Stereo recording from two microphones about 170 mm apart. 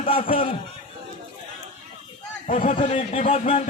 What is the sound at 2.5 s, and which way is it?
Speech, 50° left (ahead or behind).